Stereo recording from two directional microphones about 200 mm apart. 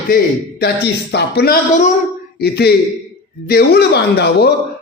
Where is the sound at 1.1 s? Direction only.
55° left (ahead or behind).